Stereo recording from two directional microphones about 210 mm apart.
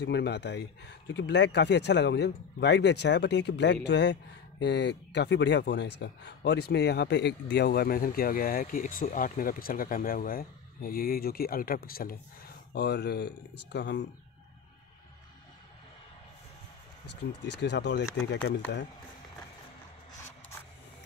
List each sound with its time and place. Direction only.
0.0 s speech: 55° left (ahead or behind)
17.0 s speech: 55° left (ahead or behind)